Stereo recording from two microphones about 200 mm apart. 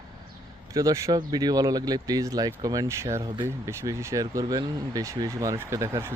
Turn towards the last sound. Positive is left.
turn(degrees=-15)  # may be behind; listen again after turning